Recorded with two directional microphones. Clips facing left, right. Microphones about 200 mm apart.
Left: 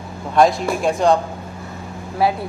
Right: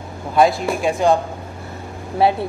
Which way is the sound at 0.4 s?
Centre (ahead or behind).